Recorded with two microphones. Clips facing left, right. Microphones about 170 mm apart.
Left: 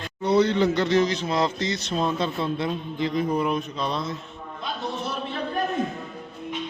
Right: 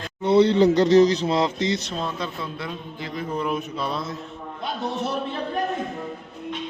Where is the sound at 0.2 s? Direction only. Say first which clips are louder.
Right 3 dB; 25° right (ahead or behind).